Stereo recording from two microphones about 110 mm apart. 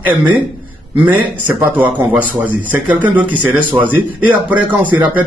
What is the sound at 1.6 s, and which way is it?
Speech, 15° right (ahead or behind).